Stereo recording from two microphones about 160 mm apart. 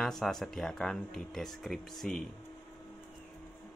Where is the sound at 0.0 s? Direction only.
Centre (ahead or behind).